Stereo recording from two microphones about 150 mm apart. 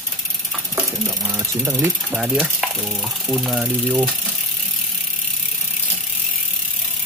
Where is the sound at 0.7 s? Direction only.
15° right (ahead or behind).